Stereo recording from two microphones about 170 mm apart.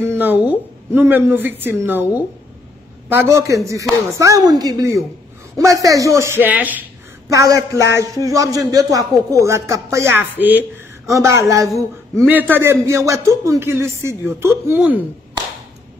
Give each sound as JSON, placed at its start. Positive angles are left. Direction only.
{"t": 0.0, "sound": "speech", "side_deg": -10}
{"t": 3.1, "sound": "speech", "side_deg": -15}